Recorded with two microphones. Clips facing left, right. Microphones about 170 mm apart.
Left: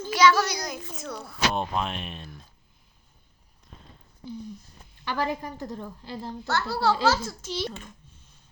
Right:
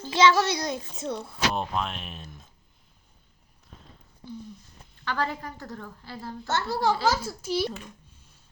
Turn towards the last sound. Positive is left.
turn(degrees=-10)  # may be behind; listen again after turning